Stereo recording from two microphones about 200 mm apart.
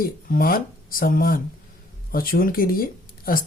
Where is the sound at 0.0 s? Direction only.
45° left (ahead or behind).